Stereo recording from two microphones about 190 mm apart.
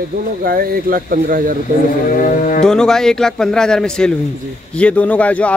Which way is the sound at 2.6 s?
5° left (ahead or behind).